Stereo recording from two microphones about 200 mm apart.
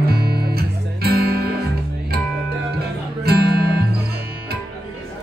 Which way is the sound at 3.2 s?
50° right (ahead or behind).